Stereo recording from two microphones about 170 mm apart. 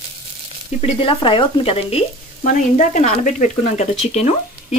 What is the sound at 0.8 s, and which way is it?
Frying, 30° left (ahead or behind).